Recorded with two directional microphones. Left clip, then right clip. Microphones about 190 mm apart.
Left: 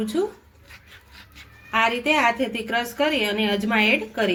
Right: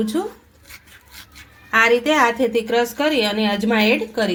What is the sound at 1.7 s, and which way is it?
A woman's voice, 35° right (ahead or behind).